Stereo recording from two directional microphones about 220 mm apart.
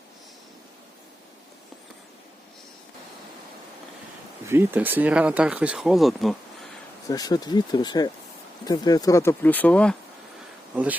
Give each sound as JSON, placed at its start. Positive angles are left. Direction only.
{"t": 4.4, "sound": "speech", "side_deg": -10}
{"t": 7.1, "sound": "speech", "side_deg": 15}